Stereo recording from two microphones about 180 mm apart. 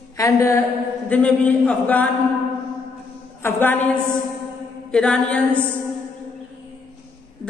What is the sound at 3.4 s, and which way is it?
Speech, 10° left (ahead or behind).